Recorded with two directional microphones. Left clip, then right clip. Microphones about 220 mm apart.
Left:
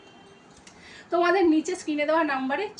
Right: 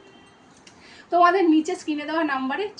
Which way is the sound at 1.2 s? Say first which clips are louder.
Right 4 dB; 20° left (ahead or behind).